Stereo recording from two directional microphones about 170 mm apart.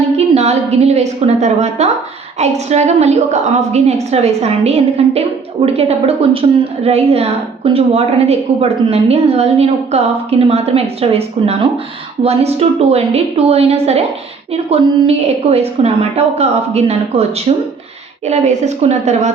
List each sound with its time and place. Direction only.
0.2 s a woman's voice: 40° right (ahead or behind)